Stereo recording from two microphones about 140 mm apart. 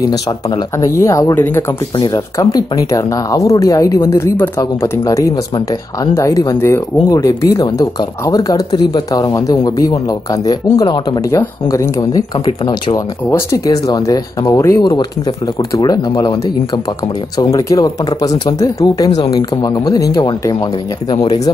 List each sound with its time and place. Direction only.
0.7 s speech: 20° left (ahead or behind)